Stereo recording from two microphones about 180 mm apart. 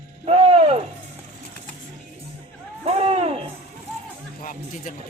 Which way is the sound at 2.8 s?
35° right (ahead or behind).